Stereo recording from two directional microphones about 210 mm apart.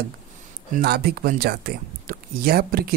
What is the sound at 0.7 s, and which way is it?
Speech, 50° right (ahead or behind).